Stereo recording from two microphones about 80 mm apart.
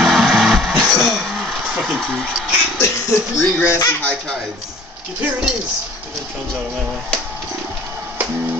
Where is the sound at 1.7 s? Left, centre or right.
Centre.